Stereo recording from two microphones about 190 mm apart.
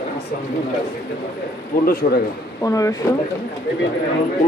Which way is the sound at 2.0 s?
40° left (ahead or behind).